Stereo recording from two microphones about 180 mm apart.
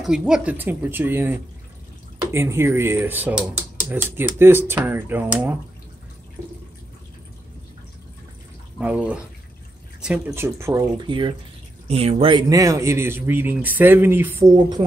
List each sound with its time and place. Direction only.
0.0 s speech: 5° right (ahead or behind)
8.7 s speech: 5° right (ahead or behind)
11.1 s speech: 25° right (ahead or behind)